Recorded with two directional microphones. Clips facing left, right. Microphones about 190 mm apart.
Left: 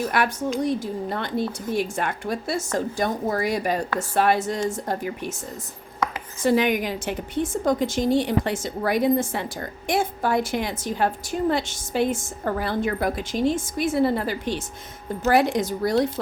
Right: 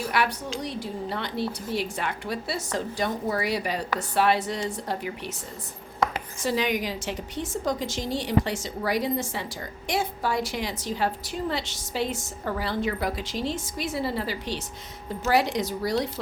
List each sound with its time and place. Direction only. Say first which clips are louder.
0.1 s a woman's voice: left 4 dB; 50° left (ahead or behind)
6.4 s a woman's voice: left 6 dB; 55° left (ahead or behind)